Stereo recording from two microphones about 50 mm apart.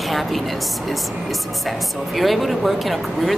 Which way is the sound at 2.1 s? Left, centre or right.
Centre.